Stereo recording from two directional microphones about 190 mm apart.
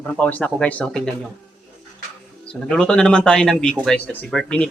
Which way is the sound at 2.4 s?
5° left (ahead or behind).